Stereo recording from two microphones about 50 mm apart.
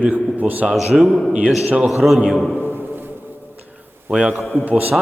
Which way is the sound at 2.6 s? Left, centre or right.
Right.